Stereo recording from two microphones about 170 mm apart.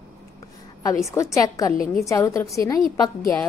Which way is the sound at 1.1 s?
20° left (ahead or behind).